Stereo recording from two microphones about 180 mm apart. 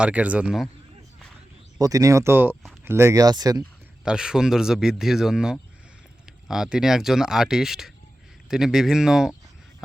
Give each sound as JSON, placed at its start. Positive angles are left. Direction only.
{"t": 0.0, "sound": "speech", "side_deg": -5}
{"t": 1.8, "sound": "speech", "side_deg": -20}
{"t": 4.0, "sound": "speech", "side_deg": -5}